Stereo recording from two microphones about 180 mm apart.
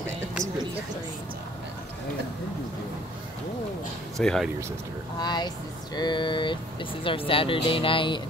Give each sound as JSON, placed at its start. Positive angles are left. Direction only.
{"t": 4.2, "sound": "speech", "side_deg": 5}
{"t": 5.2, "sound": "speech", "side_deg": 25}